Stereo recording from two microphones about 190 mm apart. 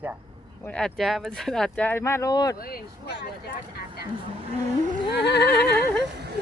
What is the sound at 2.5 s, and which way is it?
Speech, 50° left (ahead or behind).